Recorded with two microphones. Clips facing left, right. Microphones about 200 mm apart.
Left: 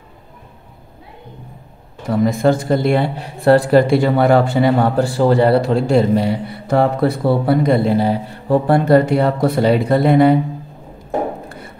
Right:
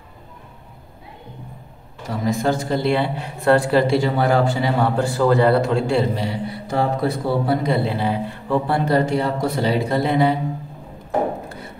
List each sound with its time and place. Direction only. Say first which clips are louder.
2.0 s a man's voice: left 6 dB; 55° left (ahead or behind)
3.3 s speech: left 5 dB; 35° left (ahead or behind)
3.9 s a man's voice: left 5 dB; 60° left (ahead or behind)